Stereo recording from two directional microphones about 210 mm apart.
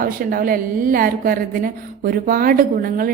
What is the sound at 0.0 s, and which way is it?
A woman's voice, 40° right (ahead or behind).